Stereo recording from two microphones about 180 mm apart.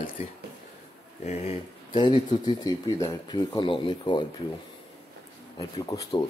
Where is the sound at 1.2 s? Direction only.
40° left (ahead or behind).